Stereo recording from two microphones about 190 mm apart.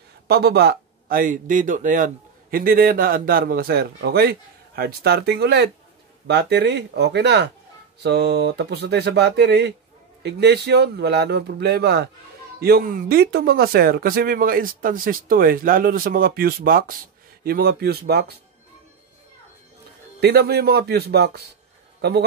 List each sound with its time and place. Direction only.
0.3 s speech: 60° right (ahead or behind)
20.2 s speech: 55° right (ahead or behind)